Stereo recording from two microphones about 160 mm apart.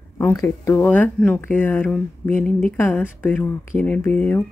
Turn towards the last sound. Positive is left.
turn(degrees=10)  # may be behind; listen again after turning